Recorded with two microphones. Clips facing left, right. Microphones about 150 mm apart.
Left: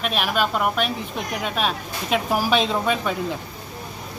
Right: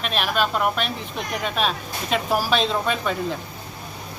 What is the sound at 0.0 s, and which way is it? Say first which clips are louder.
Speech: left 1 dB; 5° left (ahead or behind).